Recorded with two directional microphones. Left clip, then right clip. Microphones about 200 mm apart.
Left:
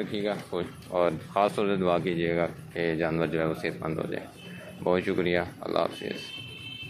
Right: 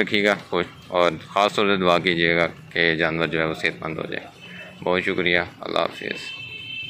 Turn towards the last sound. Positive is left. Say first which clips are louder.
# right 4 dB
turn(degrees=0)  # may be behind; listen again after turning